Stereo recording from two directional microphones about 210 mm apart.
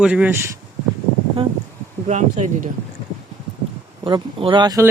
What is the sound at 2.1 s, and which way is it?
Speech, 35° right (ahead or behind).